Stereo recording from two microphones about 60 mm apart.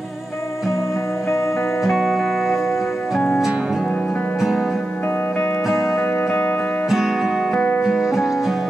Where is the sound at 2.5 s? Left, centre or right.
Left.